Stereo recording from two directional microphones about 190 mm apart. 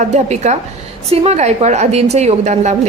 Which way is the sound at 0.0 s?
35° right (ahead or behind).